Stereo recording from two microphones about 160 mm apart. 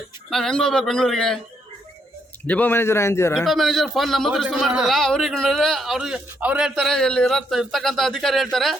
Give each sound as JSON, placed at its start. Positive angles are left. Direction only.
{"t": 0.3, "sound": "a man's voice", "side_deg": 0}
{"t": 2.5, "sound": "a man's voice", "side_deg": 10}
{"t": 3.3, "sound": "a man's voice", "side_deg": 0}